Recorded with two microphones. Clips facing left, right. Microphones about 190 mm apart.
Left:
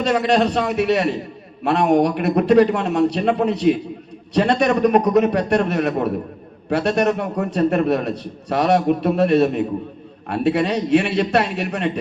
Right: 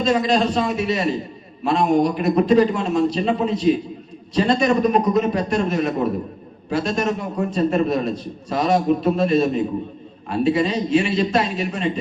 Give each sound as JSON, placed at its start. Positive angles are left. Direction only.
{"t": 0.0, "sound": "a man's voice", "side_deg": 65}